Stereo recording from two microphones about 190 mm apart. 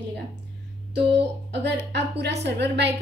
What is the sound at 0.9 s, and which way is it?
A woman's voice, 65° right (ahead or behind).